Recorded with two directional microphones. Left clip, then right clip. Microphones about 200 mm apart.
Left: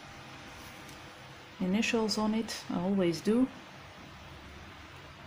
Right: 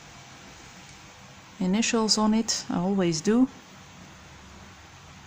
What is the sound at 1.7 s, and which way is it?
Speech, 25° right (ahead or behind).